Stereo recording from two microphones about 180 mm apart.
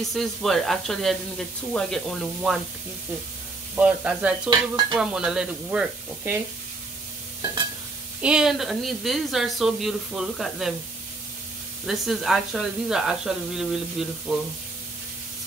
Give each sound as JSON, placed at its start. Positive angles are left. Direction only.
{"t": 0.0, "sound": "speech", "side_deg": 0}
{"t": 3.7, "sound": "speech", "side_deg": -5}
{"t": 4.5, "sound": "dishes", "side_deg": -25}
{"t": 4.9, "sound": "speech", "side_deg": -5}
{"t": 8.2, "sound": "speech", "side_deg": -5}
{"t": 11.8, "sound": "speech", "side_deg": 0}